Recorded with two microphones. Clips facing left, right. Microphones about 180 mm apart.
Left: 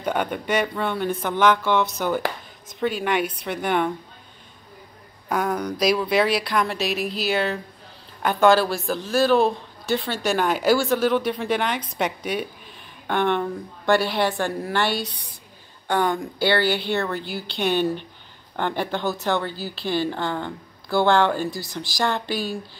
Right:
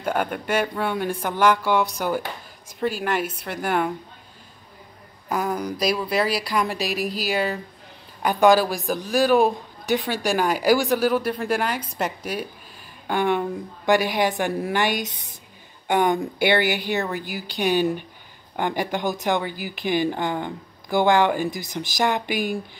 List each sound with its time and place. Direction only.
0.0 s a woman's voice: 5° right (ahead or behind)
5.3 s a woman's voice: 5° right (ahead or behind)